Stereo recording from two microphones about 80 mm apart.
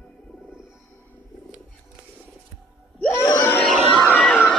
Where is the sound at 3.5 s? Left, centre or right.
Centre.